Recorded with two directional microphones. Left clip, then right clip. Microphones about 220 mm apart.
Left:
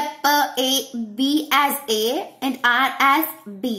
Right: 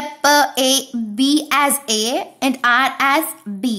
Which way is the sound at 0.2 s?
45° right (ahead or behind).